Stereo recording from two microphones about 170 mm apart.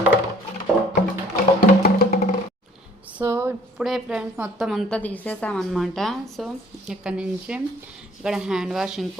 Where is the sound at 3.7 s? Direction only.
Centre (ahead or behind).